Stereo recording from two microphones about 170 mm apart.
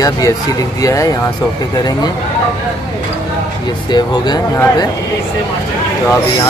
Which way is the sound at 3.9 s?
25° left (ahead or behind).